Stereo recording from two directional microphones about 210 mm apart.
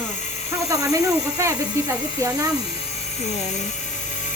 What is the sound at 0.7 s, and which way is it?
Speech, 15° right (ahead or behind).